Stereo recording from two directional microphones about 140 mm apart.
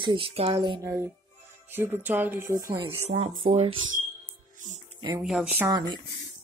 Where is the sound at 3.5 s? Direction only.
45° right (ahead or behind).